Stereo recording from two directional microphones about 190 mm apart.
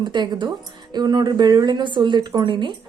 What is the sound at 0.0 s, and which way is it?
A woman's voice, 25° right (ahead or behind).